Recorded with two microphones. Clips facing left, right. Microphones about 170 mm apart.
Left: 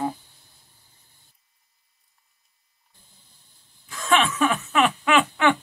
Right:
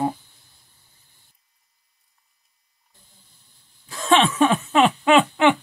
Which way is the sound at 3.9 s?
30° right (ahead or behind).